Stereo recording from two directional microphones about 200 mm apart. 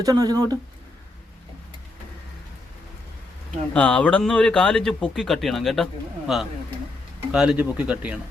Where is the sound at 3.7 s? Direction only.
5° left (ahead or behind).